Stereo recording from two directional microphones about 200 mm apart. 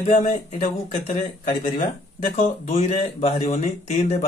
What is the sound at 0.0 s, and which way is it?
Speech, 35° left (ahead or behind).